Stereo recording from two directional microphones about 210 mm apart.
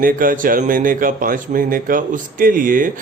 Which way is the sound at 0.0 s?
40° right (ahead or behind).